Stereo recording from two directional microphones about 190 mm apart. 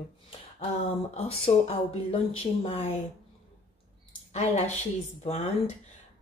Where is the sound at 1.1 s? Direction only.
35° left (ahead or behind).